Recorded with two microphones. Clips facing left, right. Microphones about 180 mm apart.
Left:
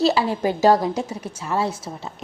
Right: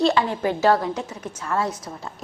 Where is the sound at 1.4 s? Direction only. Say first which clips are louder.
Left 1 dB; 25° left (ahead or behind).